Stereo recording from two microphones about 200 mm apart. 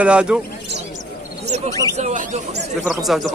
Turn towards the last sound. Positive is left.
turn(degrees=0)  # may be behind; listen again after turning